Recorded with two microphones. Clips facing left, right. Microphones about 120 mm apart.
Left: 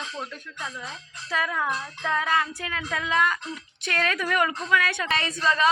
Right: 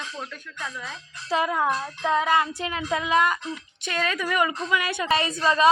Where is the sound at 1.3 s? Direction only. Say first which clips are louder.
Right 4 dB; 25° right (ahead or behind).